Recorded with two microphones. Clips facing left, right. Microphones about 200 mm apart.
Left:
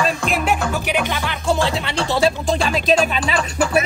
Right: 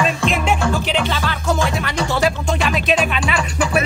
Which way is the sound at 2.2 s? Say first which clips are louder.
Left 3 dB; 30° left (ahead or behind).